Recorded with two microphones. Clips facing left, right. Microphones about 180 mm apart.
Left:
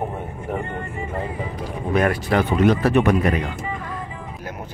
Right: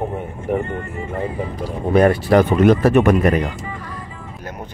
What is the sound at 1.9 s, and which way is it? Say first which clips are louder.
Speech: right 6 dB; 35° right (ahead or behind).